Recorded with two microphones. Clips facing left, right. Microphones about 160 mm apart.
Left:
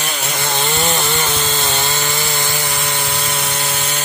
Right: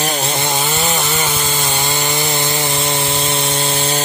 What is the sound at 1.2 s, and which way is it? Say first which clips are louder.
Sawing: even; 10° right (ahead or behind).